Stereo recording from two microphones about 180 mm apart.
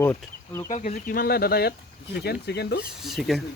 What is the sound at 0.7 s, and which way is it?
Speech, 45° left (ahead or behind).